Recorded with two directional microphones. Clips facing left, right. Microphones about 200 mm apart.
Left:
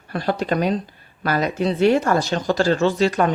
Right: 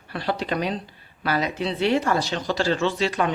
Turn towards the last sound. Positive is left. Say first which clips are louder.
# left 5 dB
turn(degrees=45)  # may be behind; listen again after turning